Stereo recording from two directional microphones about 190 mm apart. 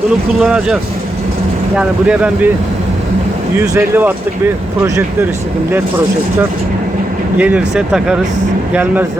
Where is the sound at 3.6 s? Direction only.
10° right (ahead or behind).